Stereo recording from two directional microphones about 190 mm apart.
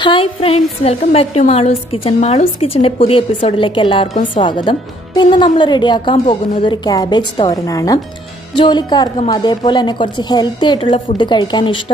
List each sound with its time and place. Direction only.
0.0 s a woman's voice: 30° left (ahead or behind)